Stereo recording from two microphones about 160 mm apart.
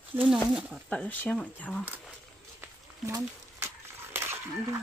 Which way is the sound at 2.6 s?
15° right (ahead or behind).